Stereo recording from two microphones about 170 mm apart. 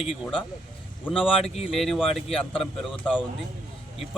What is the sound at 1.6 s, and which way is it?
A man's voice, centre (ahead or behind).